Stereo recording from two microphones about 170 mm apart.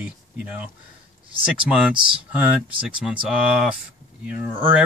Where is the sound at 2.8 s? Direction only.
5° right (ahead or behind).